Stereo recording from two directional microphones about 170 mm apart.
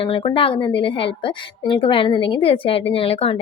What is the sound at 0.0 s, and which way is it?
A woman's voice, 30° left (ahead or behind).